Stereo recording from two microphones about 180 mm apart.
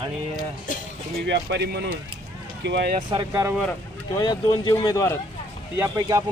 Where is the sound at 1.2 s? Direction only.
75° right (ahead or behind).